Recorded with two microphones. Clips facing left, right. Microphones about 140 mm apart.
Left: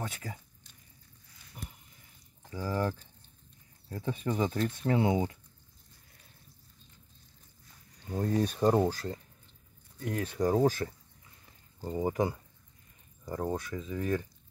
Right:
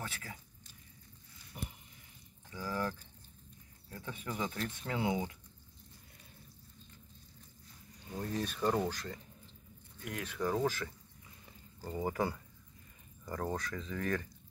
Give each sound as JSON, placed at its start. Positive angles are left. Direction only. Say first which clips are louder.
{"t": 1.6, "sound": "a sound", "louder": "right 2 dB", "side_deg": -5}
{"t": 2.5, "sound": "speech", "louder": "left 5 dB", "side_deg": 20}
{"t": 3.9, "sound": "speech", "louder": "left 9 dB", "side_deg": 30}
{"t": 8.3, "sound": "speech", "louder": "left 8 dB", "side_deg": 50}
{"t": 8.5, "sound": "speech", "louder": "left 5 dB", "side_deg": 35}
{"t": 11.8, "sound": "speech", "louder": "left 5 dB", "side_deg": 20}